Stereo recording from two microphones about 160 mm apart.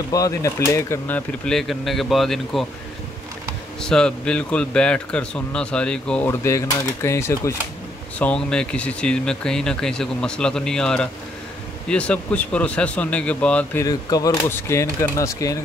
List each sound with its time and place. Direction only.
0.1 s speech: 20° left (ahead or behind); by 2.6 s centre (ahead or behind)
3.8 s speech: 5° left (ahead or behind)
6.4 s speech: 15° left (ahead or behind)
8.2 s speech: 5° left (ahead or behind)
13.8 s speech: 25° left (ahead or behind)